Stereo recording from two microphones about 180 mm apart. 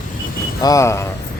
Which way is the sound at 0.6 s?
20° left (ahead or behind).